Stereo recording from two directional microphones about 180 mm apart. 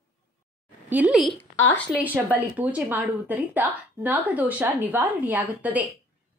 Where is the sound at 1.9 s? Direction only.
10° right (ahead or behind).